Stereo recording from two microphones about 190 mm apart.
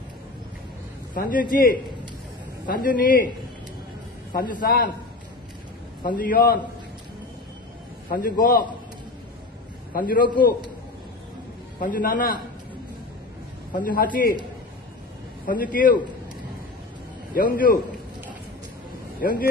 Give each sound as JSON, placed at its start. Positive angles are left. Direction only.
{"t": 1.1, "sound": "a man's voice", "side_deg": 45}
{"t": 4.3, "sound": "a man's voice", "side_deg": 45}
{"t": 6.0, "sound": "a man's voice", "side_deg": 50}
{"t": 8.1, "sound": "a man's voice", "side_deg": 50}
{"t": 9.9, "sound": "a man's voice", "side_deg": 45}
{"t": 11.8, "sound": "a man's voice", "side_deg": 50}
{"t": 13.7, "sound": "a man's voice", "side_deg": 50}
{"t": 15.4, "sound": "a man's voice", "side_deg": 45}
{"t": 17.3, "sound": "a man's voice", "side_deg": 50}
{"t": 19.1, "sound": "speech", "side_deg": 50}